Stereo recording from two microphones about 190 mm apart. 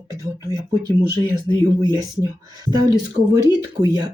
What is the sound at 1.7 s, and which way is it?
Speech, 20° right (ahead or behind).